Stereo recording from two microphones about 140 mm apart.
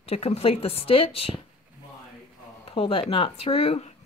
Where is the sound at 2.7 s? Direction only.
40° left (ahead or behind).